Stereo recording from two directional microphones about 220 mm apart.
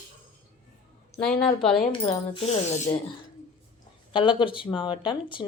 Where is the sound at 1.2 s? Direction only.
5° left (ahead or behind).